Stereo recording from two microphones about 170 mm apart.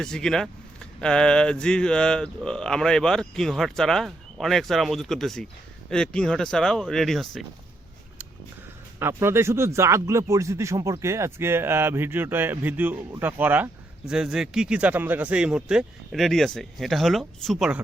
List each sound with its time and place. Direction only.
0.0 s speech: 5° left (ahead or behind)
9.0 s speech: 15° right (ahead or behind)